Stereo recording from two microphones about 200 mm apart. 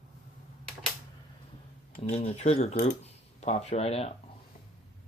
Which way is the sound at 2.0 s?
30° left (ahead or behind).